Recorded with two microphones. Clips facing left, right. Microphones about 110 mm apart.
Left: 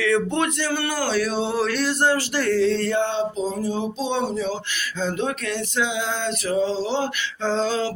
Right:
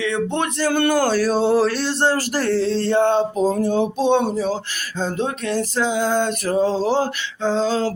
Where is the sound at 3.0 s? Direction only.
50° right (ahead or behind).